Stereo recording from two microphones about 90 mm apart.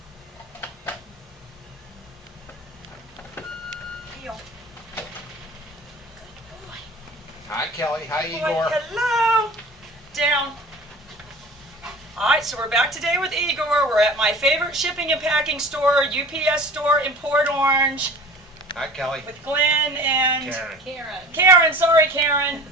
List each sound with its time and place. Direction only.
0.6 s a sound: 25° left (ahead or behind)
3.4 s vehicle: 25° left (ahead or behind)
7.5 s a sound: 35° left (ahead or behind)
8.6 s a sound: centre (ahead or behind)
11.8 s a woman's voice: 5° right (ahead or behind); by 18.0 s 25° right (ahead or behind)
18.8 s speech: 5° left (ahead or behind)
19.5 s a woman's voice: 20° right (ahead or behind)
20.5 s a woman's voice: 10° right (ahead or behind)
21.3 s a woman's voice: 30° right (ahead or behind)